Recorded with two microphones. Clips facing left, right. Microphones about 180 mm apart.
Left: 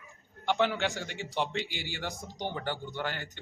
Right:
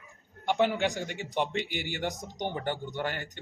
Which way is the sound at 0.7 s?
15° right (ahead or behind).